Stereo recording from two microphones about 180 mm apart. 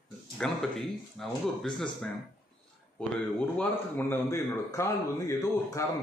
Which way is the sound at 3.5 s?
10° left (ahead or behind).